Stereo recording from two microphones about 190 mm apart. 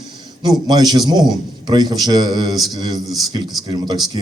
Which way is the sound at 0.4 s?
20° right (ahead or behind).